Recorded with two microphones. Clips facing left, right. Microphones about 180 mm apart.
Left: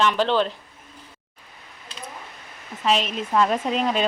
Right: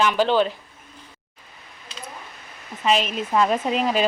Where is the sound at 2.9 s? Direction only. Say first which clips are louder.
Right 1 dB; centre (ahead or behind).